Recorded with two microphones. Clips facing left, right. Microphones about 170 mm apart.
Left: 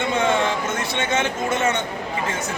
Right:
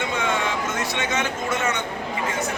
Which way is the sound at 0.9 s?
25° left (ahead or behind).